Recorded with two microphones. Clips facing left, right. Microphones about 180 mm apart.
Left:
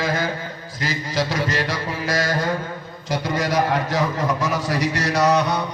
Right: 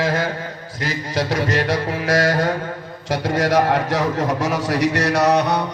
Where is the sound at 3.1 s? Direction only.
70° right (ahead or behind).